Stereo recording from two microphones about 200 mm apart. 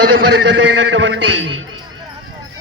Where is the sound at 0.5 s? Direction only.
65° right (ahead or behind).